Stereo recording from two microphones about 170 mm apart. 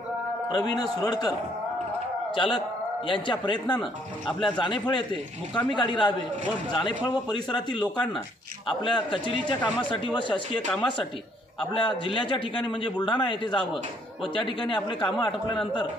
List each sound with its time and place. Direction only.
0.5 s a man's voice: 25° left (ahead or behind)
2.3 s a man's voice: 30° left (ahead or behind)